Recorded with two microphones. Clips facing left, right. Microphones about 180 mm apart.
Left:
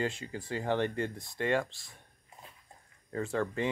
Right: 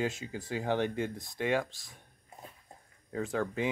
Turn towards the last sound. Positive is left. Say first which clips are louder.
# even
turn(degrees=-5)  # may be behind; listen again after turning